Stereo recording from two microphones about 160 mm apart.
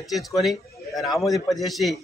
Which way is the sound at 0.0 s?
Centre (ahead or behind).